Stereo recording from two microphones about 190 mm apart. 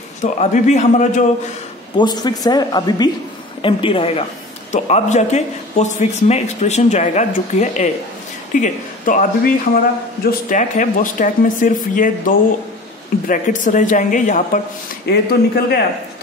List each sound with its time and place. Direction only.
0.2 s a man's voice: 40° left (ahead or behind)
2.0 s a man's voice: 20° left (ahead or behind); by 9.2 s 40° left (ahead or behind)
10.2 s speech: 40° left (ahead or behind)
15.0 s speech: 55° left (ahead or behind)